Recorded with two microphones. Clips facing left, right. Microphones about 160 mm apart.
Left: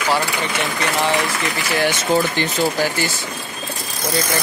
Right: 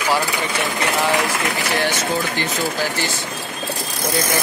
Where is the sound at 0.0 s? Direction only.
10° right (ahead or behind).